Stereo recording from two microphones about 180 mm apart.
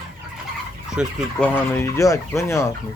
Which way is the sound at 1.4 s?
10° left (ahead or behind).